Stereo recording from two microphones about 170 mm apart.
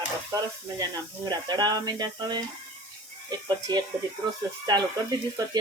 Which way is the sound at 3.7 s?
25° right (ahead or behind).